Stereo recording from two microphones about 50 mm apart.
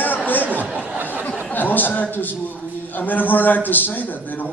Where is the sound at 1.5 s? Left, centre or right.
Left.